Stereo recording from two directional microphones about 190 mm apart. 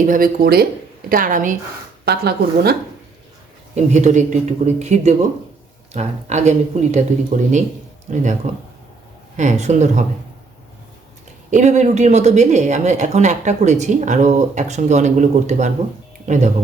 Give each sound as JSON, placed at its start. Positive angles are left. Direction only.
{"t": 0.0, "sound": "speech", "side_deg": -45}
{"t": 2.0, "sound": "speech", "side_deg": -60}
{"t": 3.8, "sound": "speech", "side_deg": -35}
{"t": 9.4, "sound": "speech", "side_deg": -40}
{"t": 11.5, "sound": "speech", "side_deg": -40}